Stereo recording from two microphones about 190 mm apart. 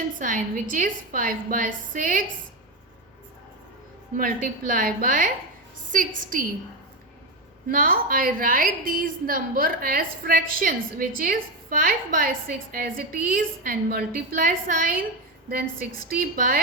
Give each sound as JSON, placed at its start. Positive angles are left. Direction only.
{"t": 0.2, "sound": "a woman's voice", "side_deg": -45}
{"t": 4.2, "sound": "a woman's voice", "side_deg": -45}
{"t": 7.7, "sound": "a woman's voice", "side_deg": -45}
{"t": 16.0, "sound": "a woman's voice", "side_deg": -50}